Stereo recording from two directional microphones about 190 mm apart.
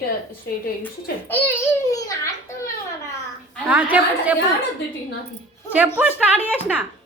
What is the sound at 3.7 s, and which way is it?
Speech, 5° right (ahead or behind).